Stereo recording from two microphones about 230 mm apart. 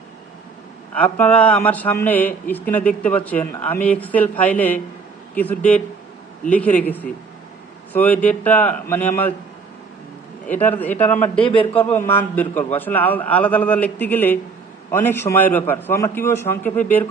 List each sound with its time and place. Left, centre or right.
0.9 s a man's voice: centre
10.4 s a man's voice: centre
11.3 s a man's voice: left
11.7 s a man's voice: centre